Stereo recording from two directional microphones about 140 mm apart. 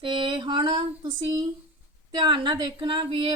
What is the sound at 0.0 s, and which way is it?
Speech, 35° right (ahead or behind).